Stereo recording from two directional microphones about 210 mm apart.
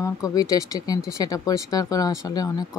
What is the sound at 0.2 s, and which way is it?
Speech, 15° left (ahead or behind).